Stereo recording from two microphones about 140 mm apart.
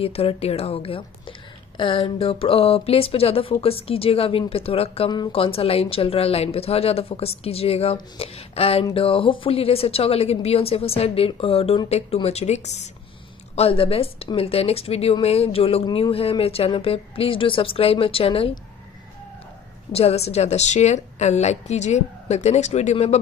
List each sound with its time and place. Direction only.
0.0 s speech: 45° left (ahead or behind)
19.9 s speech: 45° left (ahead or behind)